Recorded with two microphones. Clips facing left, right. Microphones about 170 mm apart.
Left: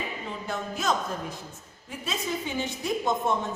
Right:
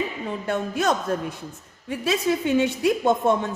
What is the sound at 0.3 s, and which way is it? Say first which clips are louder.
A woman's voice: right 7 dB; 65° right (ahead or behind).